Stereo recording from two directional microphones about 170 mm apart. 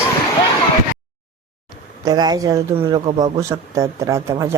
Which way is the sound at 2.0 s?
25° right (ahead or behind).